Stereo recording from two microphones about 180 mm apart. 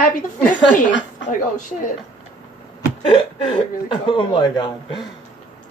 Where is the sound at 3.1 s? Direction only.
30° left (ahead or behind).